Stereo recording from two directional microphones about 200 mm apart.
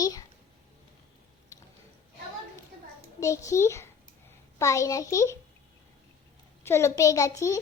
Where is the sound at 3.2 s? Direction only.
15° left (ahead or behind).